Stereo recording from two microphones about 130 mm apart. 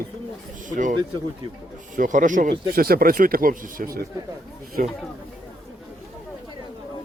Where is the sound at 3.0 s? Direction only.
90° right.